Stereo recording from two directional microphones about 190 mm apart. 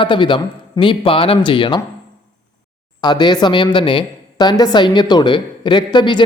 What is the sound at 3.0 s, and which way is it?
A woman's voice, 25° left (ahead or behind).